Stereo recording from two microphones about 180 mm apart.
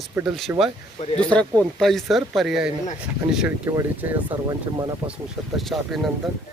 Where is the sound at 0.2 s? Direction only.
Centre (ahead or behind).